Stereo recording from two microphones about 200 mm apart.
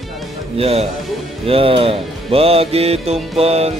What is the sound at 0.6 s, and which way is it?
Music, 30° right (ahead or behind).